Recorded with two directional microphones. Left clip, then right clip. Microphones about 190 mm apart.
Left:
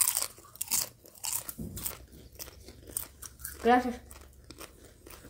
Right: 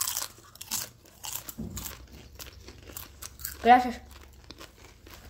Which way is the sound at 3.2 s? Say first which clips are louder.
Right 3 dB; 30° right (ahead or behind).